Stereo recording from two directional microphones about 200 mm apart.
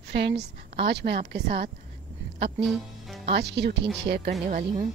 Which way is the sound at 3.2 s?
55° right (ahead or behind).